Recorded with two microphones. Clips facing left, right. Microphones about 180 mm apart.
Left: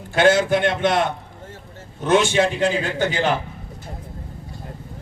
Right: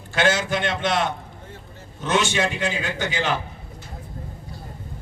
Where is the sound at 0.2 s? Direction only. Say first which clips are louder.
Left 6 dB; 55° left (ahead or behind).